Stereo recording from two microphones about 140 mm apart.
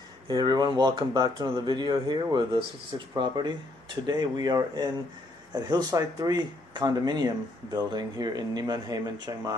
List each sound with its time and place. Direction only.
0.3 s speech: 30° right (ahead or behind)